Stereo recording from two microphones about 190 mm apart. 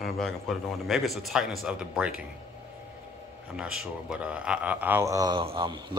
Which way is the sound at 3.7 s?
5° right (ahead or behind).